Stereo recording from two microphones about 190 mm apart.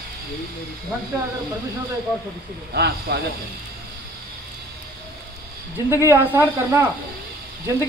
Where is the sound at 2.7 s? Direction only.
60° right (ahead or behind).